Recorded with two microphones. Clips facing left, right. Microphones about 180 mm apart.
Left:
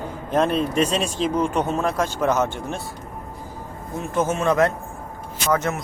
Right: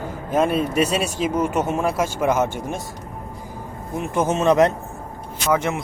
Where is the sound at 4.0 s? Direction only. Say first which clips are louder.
Right 2 dB; 20° right (ahead or behind).